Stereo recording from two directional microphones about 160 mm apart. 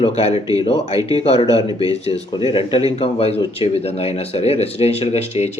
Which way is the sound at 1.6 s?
25° right (ahead or behind).